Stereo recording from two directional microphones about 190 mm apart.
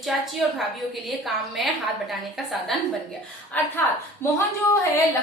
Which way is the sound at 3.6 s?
10° left (ahead or behind).